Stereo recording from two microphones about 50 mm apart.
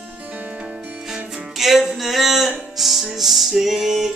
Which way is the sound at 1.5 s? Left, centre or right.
Centre.